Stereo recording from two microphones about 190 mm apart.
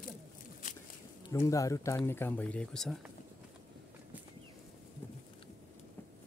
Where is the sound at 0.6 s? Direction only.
40° left (ahead or behind).